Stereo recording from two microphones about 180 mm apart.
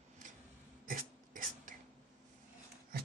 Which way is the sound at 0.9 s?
50° right (ahead or behind).